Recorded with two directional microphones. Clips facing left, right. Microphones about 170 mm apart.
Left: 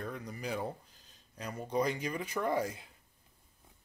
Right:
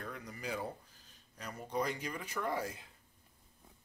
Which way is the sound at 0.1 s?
20° left (ahead or behind).